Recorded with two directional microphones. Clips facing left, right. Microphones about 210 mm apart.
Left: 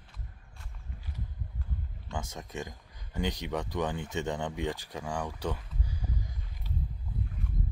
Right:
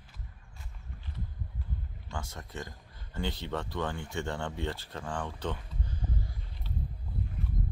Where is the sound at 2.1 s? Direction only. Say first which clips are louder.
Left 3 dB; 20° left (ahead or behind).